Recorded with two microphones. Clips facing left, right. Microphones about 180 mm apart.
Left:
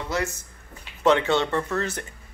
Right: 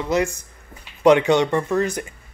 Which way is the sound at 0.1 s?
15° right (ahead or behind).